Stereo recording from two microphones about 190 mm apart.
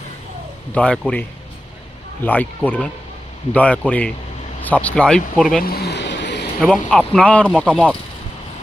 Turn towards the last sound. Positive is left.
turn(degrees=5)  # may be behind; listen again after turning